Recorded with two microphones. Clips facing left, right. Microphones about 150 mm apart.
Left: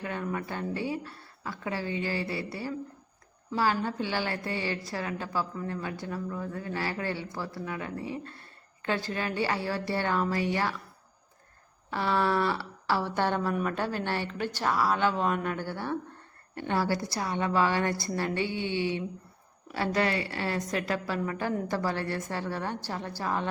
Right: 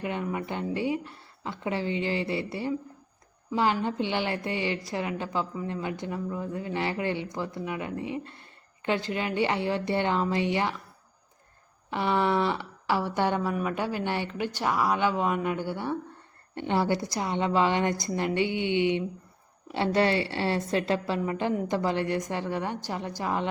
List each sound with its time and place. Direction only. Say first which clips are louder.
0.0 s speech: right 2 dB; 15° right (ahead or behind)
11.9 s speech: right 2 dB; 15° right (ahead or behind)